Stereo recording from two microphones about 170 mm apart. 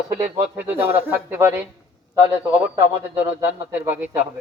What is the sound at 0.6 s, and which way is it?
Speech, 10° right (ahead or behind).